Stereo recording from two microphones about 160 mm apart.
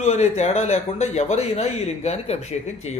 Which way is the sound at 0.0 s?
45° left (ahead or behind).